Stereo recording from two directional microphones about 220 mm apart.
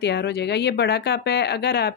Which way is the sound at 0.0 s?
50° left (ahead or behind).